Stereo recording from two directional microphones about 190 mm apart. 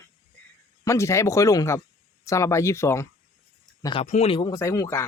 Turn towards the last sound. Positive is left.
turn(degrees=15)  # may be behind; listen again after turning